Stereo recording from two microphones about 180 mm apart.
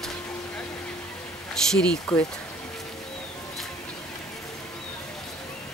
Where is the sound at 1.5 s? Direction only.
5° left (ahead or behind).